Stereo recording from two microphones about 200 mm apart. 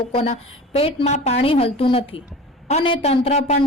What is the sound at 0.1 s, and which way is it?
A woman's voice, 30° left (ahead or behind).